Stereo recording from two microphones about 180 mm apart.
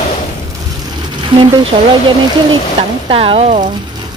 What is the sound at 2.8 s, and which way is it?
Speech, 30° right (ahead or behind).